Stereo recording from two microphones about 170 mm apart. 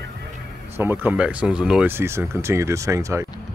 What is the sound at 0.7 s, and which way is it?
Speech, 15° right (ahead or behind).